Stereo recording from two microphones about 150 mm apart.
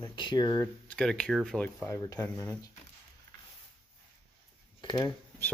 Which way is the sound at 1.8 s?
20° left (ahead or behind).